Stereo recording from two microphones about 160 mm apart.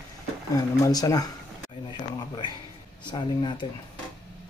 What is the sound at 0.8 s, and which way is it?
Speech, 25° left (ahead or behind).